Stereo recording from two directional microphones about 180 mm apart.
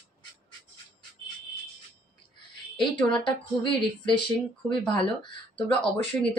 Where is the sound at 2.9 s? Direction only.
30° left (ahead or behind).